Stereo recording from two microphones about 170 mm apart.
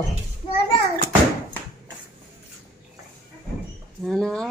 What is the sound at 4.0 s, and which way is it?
Speech, centre (ahead or behind).